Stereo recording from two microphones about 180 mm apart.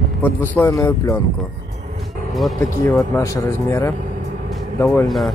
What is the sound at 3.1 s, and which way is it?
Speech, 15° left (ahead or behind).